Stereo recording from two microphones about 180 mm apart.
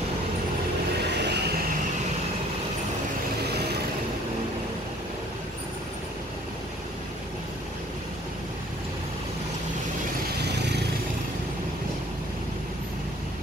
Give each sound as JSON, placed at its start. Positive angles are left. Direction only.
{"t": 1.1, "sound": "vehicle", "side_deg": -70}
{"t": 10.3, "sound": "vehicle", "side_deg": -65}